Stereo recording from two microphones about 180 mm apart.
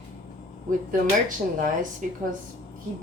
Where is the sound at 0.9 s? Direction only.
50° right (ahead or behind).